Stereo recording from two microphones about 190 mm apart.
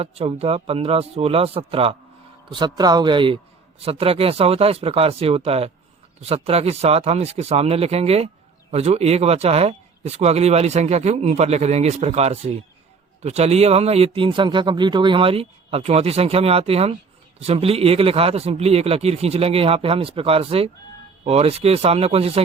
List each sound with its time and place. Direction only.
0.0 s speech: 30° right (ahead or behind)